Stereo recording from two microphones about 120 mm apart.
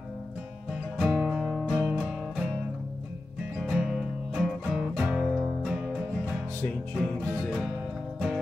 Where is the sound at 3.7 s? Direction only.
Centre (ahead or behind).